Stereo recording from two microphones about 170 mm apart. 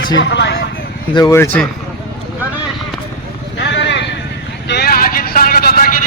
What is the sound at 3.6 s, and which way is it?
Vehicle, 90° left.